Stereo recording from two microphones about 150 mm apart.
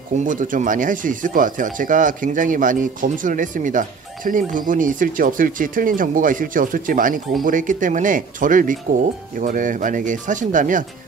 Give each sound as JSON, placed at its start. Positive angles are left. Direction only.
{"t": 0.2, "sound": "speech", "side_deg": -60}